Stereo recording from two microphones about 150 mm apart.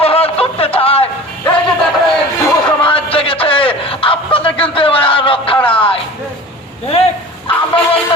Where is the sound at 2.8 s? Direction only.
40° left (ahead or behind).